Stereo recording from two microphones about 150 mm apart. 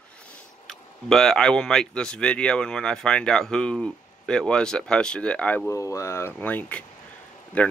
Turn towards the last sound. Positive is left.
turn(degrees=5)  # may be behind; listen again after turning